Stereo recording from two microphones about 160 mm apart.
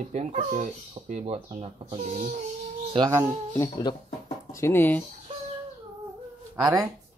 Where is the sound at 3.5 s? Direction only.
20° left (ahead or behind).